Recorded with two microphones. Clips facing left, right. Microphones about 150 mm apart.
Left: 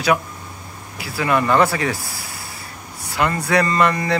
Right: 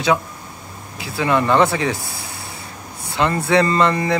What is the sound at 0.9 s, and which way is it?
Speech, 20° right (ahead or behind).